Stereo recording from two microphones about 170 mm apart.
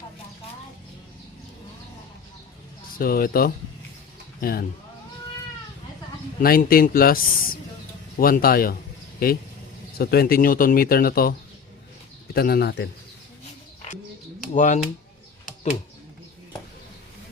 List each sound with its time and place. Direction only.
3.0 s speech: 60° left (ahead or behind)
6.4 s speech: 60° left (ahead or behind); by 12.9 s 80° left
14.5 s speech: 50° left (ahead or behind)